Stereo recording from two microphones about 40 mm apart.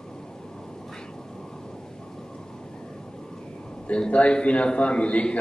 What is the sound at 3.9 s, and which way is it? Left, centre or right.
A man's voice, left.